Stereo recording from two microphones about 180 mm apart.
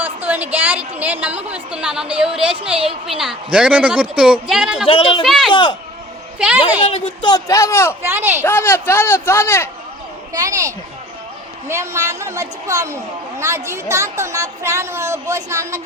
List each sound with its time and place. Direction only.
0.0 s a woman's voice: 10° right (ahead or behind)
4.9 s speech: 30° left (ahead or behind)
5.2 s speech: centre (ahead or behind)
5.5 s speech: 25° left (ahead or behind)
6.4 s speech: 5° right (ahead or behind)
6.8 s speech: 30° left (ahead or behind); by 7.9 s 15° left (ahead or behind)
8.0 s a woman's voice: 10° right (ahead or behind)
8.4 s speech: 10° left (ahead or behind)
10.3 s a woman's voice: 20° right (ahead or behind)